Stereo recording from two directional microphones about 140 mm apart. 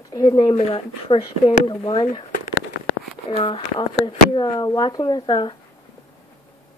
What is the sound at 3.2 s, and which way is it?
Speech, 40° left (ahead or behind).